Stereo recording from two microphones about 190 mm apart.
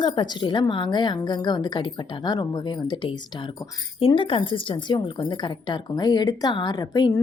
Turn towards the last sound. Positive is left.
turn(degrees=20)  # may be behind; listen again after turning